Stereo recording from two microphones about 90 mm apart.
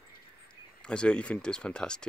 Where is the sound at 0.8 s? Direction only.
10° left (ahead or behind).